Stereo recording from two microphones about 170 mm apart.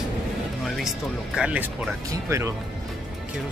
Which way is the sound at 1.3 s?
5° right (ahead or behind).